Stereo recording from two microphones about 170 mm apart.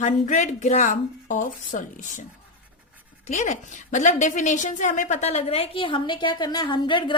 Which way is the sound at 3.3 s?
45° left (ahead or behind).